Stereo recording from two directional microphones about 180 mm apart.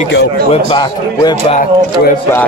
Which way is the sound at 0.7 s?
25° left (ahead or behind).